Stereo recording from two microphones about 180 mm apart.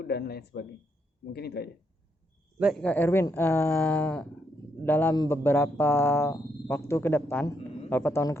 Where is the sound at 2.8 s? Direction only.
10° left (ahead or behind).